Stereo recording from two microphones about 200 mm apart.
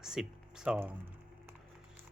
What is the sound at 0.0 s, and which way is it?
Speech, 5° right (ahead or behind).